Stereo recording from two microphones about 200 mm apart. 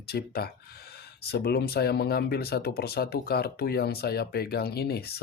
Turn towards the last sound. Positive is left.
turn(degrees=50)  # may be behind; listen again after turning